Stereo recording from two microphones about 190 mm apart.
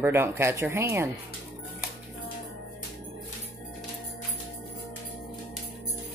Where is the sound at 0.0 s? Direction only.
10° right (ahead or behind).